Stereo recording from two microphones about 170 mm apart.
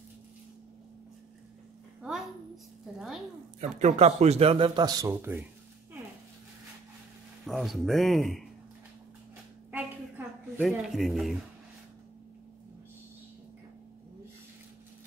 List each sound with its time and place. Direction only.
2.0 s a woman's voice: centre (ahead or behind)
3.8 s speech: 40° right (ahead or behind); by 5.1 s 25° right (ahead or behind)
5.1 s speech: 10° right (ahead or behind)
7.4 s speech: centre (ahead or behind)
9.7 s a sound: 10° right (ahead or behind)
10.6 s speech: centre (ahead or behind)